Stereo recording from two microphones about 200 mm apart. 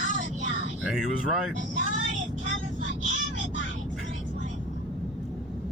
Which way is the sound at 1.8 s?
40° right (ahead or behind).